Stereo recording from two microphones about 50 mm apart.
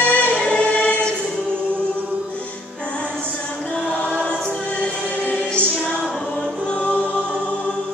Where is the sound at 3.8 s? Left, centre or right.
Right.